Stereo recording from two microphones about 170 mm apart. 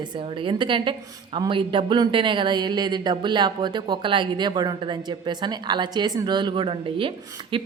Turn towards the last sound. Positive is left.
turn(degrees=-30)  # may be behind; listen again after turning